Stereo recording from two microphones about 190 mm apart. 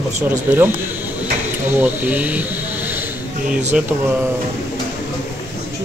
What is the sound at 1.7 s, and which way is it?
Speech, 10° right (ahead or behind).